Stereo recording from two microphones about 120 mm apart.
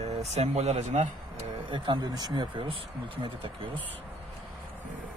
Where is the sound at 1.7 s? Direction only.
40° right (ahead or behind).